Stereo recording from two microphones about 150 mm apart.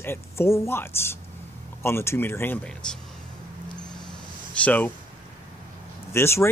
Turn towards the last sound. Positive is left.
turn(degrees=15)  # may be behind; listen again after turning